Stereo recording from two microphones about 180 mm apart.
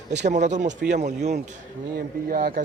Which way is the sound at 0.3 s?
40° right (ahead or behind).